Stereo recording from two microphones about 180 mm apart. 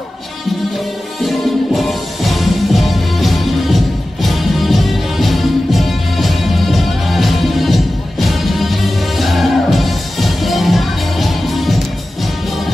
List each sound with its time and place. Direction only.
1.2 s music: centre (ahead or behind)